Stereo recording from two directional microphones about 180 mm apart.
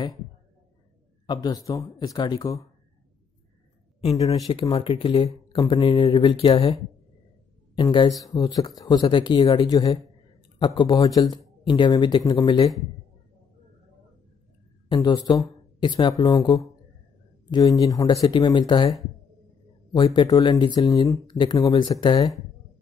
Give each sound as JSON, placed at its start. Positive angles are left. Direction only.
{"t": 1.2, "sound": "speech", "side_deg": 25}
{"t": 4.5, "sound": "speech", "side_deg": 30}
{"t": 7.7, "sound": "speech", "side_deg": 25}
{"t": 14.9, "sound": "speech", "side_deg": 20}